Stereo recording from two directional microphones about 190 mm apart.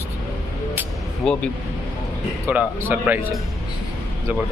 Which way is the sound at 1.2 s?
Centre (ahead or behind).